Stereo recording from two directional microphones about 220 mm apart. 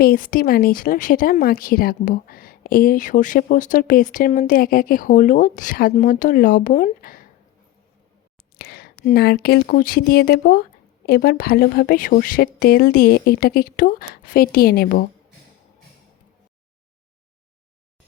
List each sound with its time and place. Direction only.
0.0 s speech: 40° left (ahead or behind)
8.5 s a woman's voice: 45° left (ahead or behind)